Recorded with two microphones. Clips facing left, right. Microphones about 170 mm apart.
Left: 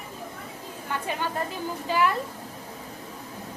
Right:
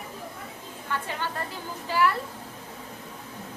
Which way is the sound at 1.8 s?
20° left (ahead or behind).